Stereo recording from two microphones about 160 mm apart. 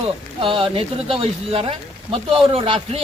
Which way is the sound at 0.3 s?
35° right (ahead or behind).